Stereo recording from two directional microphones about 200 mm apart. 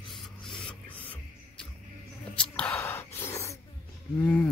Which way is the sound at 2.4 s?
5° left (ahead or behind).